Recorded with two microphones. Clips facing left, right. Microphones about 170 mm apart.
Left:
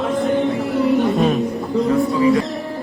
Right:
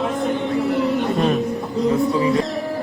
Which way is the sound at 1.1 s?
Centre (ahead or behind).